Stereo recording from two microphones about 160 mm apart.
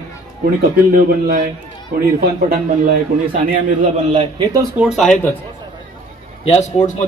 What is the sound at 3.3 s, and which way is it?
Speech, 55° right (ahead or behind).